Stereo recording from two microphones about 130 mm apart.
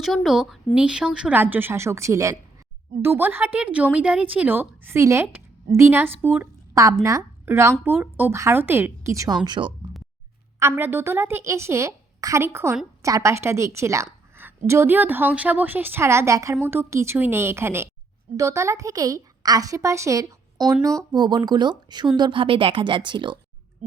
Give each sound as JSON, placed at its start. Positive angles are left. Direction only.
{"t": 0.0, "sound": "a woman's voice", "side_deg": 0}
{"t": 10.6, "sound": "a woman's voice", "side_deg": -15}